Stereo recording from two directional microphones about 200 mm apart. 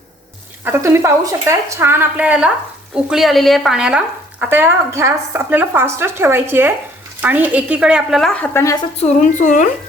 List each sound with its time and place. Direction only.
0.6 s a woman's voice: 10° right (ahead or behind); by 8.8 s 15° left (ahead or behind)
9.0 s a woman's voice: 40° left (ahead or behind)